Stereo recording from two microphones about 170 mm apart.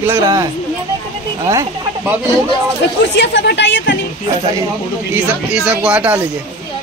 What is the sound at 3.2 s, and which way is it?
Speech, 90° left.